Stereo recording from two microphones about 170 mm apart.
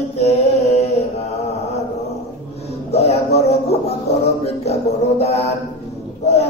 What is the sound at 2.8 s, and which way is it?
Music, 40° left (ahead or behind).